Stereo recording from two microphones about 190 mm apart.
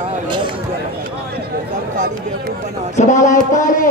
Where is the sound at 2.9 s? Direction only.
40° left (ahead or behind).